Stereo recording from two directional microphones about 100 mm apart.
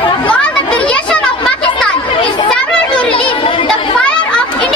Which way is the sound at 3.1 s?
60° left (ahead or behind).